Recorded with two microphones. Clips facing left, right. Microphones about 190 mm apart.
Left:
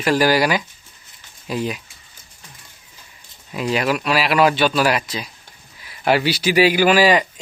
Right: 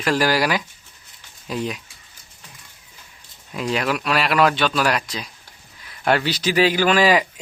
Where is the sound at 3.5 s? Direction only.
5° left (ahead or behind).